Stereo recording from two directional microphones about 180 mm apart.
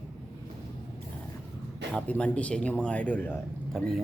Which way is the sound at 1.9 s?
5° left (ahead or behind).